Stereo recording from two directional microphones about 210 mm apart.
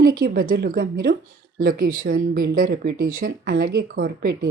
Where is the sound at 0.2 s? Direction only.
45° right (ahead or behind).